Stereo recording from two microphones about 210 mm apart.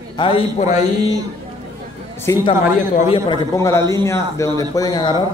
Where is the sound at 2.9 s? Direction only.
25° left (ahead or behind).